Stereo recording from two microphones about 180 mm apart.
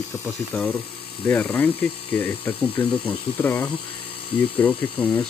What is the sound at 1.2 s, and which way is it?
Speech, 10° left (ahead or behind).